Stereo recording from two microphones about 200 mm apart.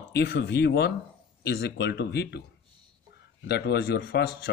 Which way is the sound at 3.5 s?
55° left (ahead or behind).